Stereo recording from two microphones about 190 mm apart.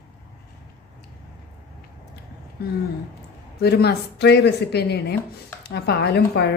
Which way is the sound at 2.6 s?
55° left (ahead or behind).